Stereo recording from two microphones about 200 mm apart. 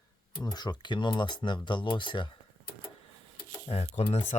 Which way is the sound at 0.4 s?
20° left (ahead or behind).